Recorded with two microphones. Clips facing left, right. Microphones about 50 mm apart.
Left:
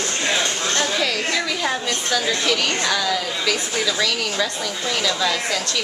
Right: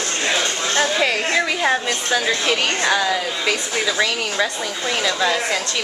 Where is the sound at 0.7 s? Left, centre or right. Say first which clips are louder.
Right 5 dB; right.